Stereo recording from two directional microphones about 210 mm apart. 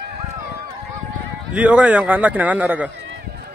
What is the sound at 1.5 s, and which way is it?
Speech, 5° right (ahead or behind).